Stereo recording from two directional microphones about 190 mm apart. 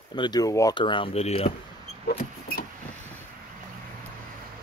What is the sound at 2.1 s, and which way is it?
Vehicle, 50° left (ahead or behind).